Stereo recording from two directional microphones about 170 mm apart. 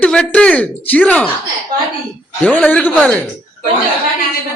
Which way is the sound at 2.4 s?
10° left (ahead or behind).